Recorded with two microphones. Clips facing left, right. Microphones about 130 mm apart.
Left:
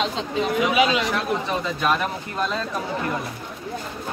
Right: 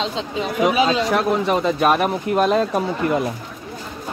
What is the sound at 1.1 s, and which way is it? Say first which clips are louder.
Speech: right 6 dB; 55° right (ahead or behind).